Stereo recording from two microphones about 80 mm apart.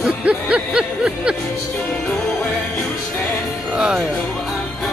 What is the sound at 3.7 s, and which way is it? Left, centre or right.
Music, centre.